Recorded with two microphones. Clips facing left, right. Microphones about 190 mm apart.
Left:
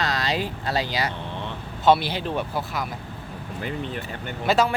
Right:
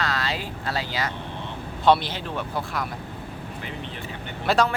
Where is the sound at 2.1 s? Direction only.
15° left (ahead or behind).